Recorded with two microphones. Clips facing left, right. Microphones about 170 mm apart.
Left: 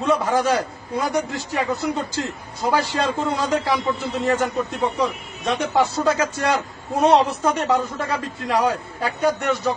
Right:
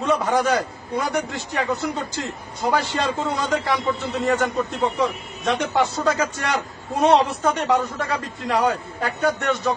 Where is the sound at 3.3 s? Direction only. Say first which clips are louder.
Left 1 dB; centre (ahead or behind).